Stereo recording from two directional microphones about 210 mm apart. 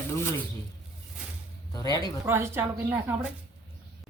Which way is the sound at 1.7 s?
20° left (ahead or behind).